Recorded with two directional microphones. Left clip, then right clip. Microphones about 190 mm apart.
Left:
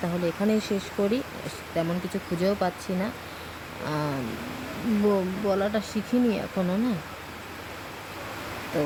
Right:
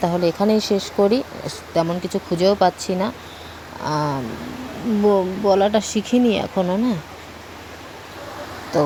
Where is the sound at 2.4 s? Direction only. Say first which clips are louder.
Right 10 dB; 20° right (ahead or behind).